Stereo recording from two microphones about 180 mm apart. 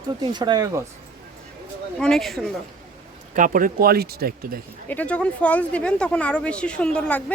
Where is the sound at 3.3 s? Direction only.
45° right (ahead or behind).